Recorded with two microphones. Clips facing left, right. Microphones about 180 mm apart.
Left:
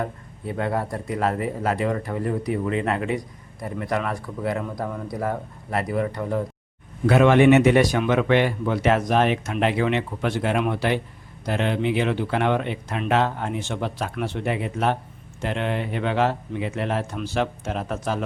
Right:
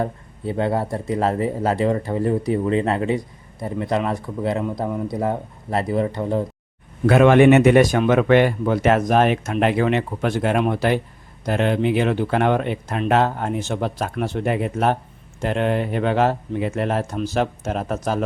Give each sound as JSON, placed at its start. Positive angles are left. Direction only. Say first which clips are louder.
{"t": 0.0, "sound": "speech", "louder": "right 4 dB", "side_deg": -30}
{"t": 7.1, "sound": "speech", "louder": "right 3 dB", "side_deg": -55}